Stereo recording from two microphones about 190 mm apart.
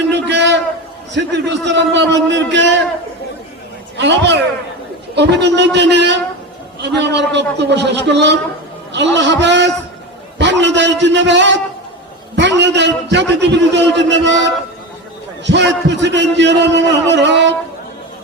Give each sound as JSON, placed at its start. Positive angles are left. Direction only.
{"t": 0.3, "sound": "a sound", "side_deg": -65}
{"t": 1.1, "sound": "a man's voice", "side_deg": -70}
{"t": 3.9, "sound": "a man's voice", "side_deg": -70}